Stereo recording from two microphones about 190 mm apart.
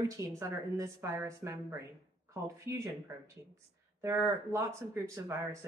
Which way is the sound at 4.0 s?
15° right (ahead or behind).